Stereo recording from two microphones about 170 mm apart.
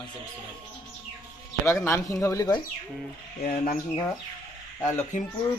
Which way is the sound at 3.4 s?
60° left (ahead or behind).